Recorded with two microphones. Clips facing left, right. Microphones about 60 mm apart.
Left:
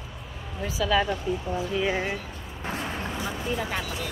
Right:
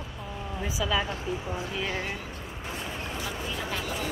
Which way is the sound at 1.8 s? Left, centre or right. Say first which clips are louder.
Left 5 dB; centre.